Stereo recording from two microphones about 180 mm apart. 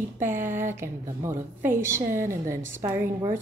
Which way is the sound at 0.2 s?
15° right (ahead or behind).